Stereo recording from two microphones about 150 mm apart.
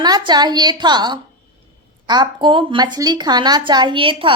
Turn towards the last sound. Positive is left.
turn(degrees=-35)  # may be behind; listen again after turning